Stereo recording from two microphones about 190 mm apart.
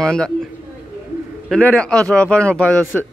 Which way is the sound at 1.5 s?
5° left (ahead or behind).